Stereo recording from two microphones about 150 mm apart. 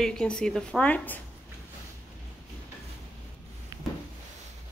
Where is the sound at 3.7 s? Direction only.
25° right (ahead or behind).